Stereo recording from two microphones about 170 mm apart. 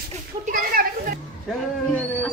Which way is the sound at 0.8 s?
60° right (ahead or behind).